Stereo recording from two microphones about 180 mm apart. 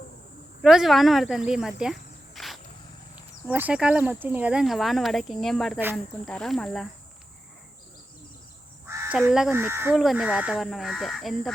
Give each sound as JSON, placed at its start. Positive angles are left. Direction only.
{"t": 0.6, "sound": "speech", "side_deg": 0}
{"t": 8.9, "sound": "crow", "side_deg": -15}
{"t": 9.5, "sound": "speech", "side_deg": -15}
{"t": 10.0, "sound": "speech", "side_deg": -5}